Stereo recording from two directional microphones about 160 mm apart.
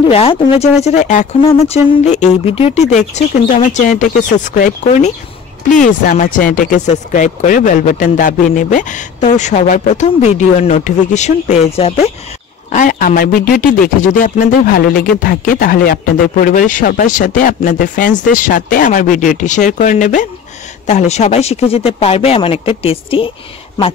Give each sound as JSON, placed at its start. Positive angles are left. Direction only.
{"t": 0.1, "sound": "speech", "side_deg": 35}
{"t": 1.4, "sound": "speech", "side_deg": 35}
{"t": 12.7, "sound": "speech", "side_deg": 55}